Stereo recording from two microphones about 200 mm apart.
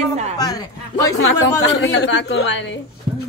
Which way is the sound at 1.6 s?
65° left (ahead or behind).